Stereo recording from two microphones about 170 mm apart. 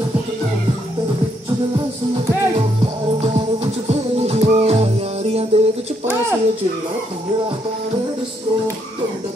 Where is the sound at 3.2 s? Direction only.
35° right (ahead or behind).